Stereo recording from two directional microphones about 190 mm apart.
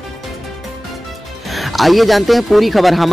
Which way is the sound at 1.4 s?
Centre (ahead or behind).